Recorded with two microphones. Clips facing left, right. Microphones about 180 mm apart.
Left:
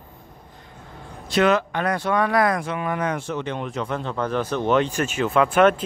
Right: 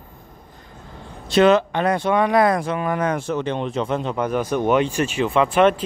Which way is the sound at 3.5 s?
25° right (ahead or behind).